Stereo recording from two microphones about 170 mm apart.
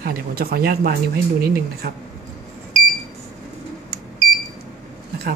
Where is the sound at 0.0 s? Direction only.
60° right (ahead or behind).